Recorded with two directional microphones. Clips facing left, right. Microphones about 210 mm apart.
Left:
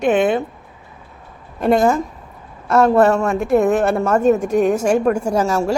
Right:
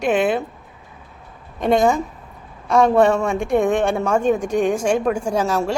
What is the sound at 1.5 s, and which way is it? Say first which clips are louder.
A woman's voice: left 2 dB; 5° left (ahead or behind).